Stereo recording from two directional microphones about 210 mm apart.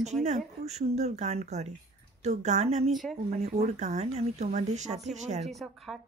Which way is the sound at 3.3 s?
30° right (ahead or behind).